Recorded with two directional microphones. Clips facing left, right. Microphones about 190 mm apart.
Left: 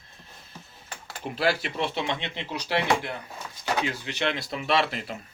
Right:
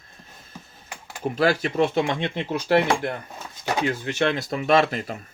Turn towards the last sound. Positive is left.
turn(degrees=-45)  # may be behind; listen again after turning